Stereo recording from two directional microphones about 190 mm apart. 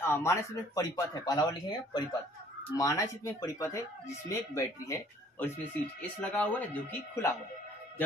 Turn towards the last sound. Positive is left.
turn(degrees=10)  # may be behind; listen again after turning